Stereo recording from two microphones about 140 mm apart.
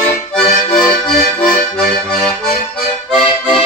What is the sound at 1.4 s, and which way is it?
Accordion, 10° left (ahead or behind).